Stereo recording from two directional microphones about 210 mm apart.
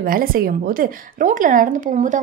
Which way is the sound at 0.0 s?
45° right (ahead or behind).